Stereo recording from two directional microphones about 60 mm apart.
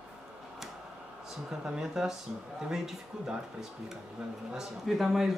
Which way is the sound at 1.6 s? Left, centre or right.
Centre.